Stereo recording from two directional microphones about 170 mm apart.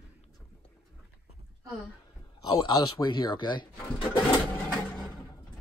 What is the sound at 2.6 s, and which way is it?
Speech, 25° left (ahead or behind).